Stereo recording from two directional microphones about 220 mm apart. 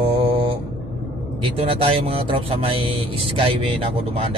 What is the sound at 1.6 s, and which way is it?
Speech, 25° right (ahead or behind).